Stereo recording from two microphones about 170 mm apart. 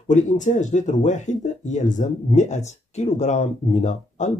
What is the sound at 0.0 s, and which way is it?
Speech, 45° left (ahead or behind).